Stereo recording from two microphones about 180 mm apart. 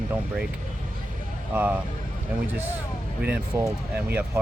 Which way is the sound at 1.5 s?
10° right (ahead or behind).